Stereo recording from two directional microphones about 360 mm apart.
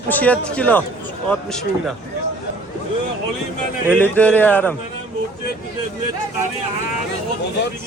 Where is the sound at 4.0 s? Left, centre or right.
Centre.